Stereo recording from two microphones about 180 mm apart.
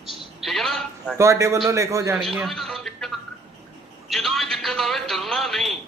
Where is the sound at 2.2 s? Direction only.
Centre (ahead or behind).